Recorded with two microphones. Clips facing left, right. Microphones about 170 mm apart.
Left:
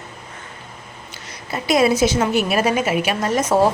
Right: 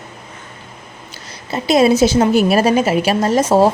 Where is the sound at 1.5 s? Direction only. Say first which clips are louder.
Right 4 dB; 25° right (ahead or behind).